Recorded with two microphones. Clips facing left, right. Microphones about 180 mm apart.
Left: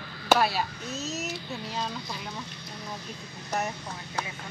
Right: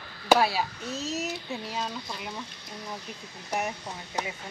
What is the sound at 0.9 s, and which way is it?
Speech, 30° right (ahead or behind).